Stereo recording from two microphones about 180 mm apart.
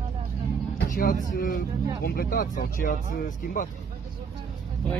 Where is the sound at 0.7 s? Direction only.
50° left (ahead or behind).